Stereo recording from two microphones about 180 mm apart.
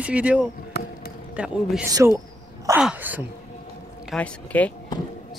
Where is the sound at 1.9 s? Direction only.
15° right (ahead or behind).